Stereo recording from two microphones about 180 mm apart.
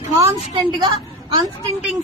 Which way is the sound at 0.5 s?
25° right (ahead or behind).